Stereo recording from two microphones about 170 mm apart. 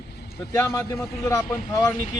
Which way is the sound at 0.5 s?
20° left (ahead or behind).